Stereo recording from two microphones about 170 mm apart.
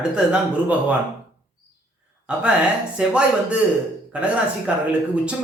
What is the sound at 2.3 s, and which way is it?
Speech, 5° right (ahead or behind).